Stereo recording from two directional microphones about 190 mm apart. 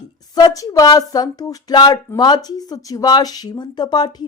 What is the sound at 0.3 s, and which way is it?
Speech, 20° left (ahead or behind).